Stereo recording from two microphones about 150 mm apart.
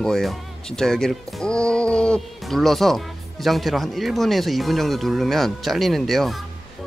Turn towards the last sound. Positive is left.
turn(degrees=0)  # may be behind; listen again after turning